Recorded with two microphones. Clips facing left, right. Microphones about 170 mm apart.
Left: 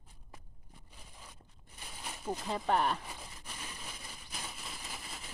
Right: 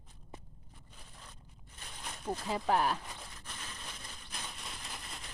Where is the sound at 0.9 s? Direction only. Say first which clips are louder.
Even; 10° left (ahead or behind).